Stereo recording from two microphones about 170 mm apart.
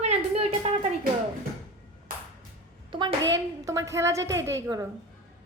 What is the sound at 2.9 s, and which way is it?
A woman's voice, 30° right (ahead or behind).